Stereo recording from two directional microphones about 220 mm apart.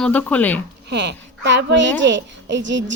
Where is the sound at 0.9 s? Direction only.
50° right (ahead or behind).